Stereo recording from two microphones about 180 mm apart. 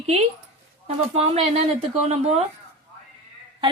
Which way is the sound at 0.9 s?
35° right (ahead or behind).